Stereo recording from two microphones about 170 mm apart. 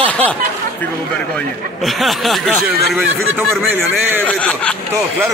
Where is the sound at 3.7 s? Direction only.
10° right (ahead or behind).